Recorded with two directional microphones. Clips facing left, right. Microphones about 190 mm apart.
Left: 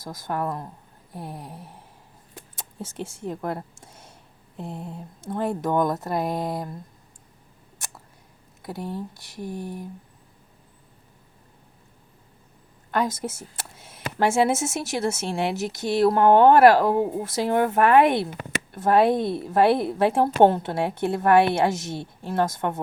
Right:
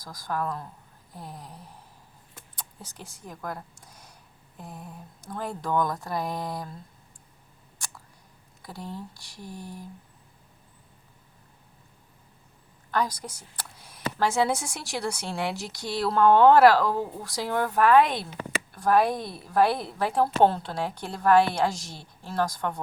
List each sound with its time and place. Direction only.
0.0 s a woman's voice: 25° left (ahead or behind)
8.6 s a woman's voice: 20° left (ahead or behind)
12.9 s a sound: 25° left (ahead or behind)
14.3 s a woman's voice: 25° left (ahead or behind)
18.0 s speech: 60° left (ahead or behind)
18.7 s a woman's voice: 25° left (ahead or behind)